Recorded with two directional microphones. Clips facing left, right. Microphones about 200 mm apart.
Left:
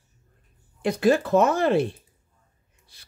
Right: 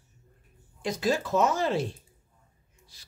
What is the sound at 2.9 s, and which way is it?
Speech, 60° left (ahead or behind).